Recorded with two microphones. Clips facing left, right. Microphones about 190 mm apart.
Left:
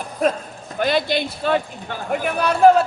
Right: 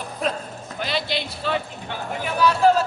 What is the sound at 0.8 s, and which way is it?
A man's voice, 50° left (ahead or behind).